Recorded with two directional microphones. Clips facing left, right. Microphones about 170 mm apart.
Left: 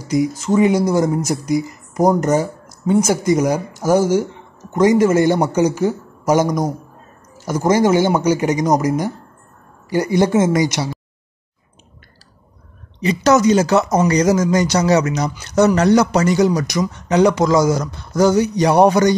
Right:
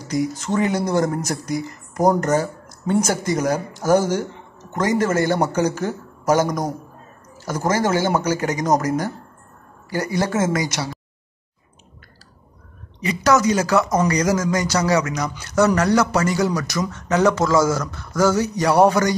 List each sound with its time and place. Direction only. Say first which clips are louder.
0.0 s speech: left 5 dB; 10° left (ahead or behind)
13.0 s speech: left 4 dB; 25° left (ahead or behind)